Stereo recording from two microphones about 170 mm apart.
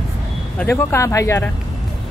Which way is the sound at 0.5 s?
10° left (ahead or behind).